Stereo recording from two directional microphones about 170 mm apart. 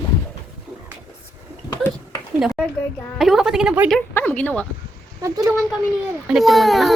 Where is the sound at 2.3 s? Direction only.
Centre (ahead or behind).